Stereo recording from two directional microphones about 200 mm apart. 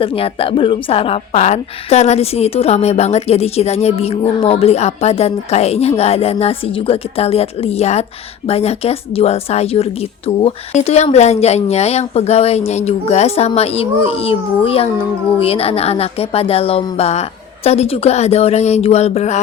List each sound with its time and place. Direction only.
0.0 s a woman's voice: 30° left (ahead or behind)